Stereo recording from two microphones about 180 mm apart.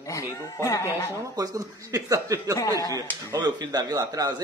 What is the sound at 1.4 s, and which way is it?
A man's voice, 20° right (ahead or behind).